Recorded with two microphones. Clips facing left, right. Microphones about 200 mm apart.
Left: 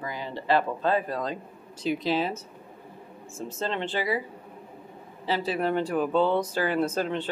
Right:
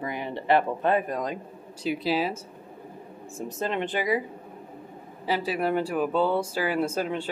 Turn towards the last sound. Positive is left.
turn(degrees=-10)  # may be behind; listen again after turning